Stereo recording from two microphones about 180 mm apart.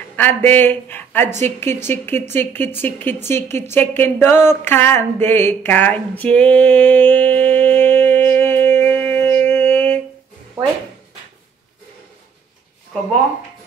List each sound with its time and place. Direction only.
0.1 s speech: 10° left (ahead or behind)